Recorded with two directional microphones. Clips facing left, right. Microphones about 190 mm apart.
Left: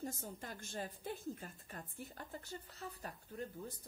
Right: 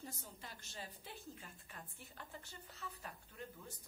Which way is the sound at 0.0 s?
45° left (ahead or behind).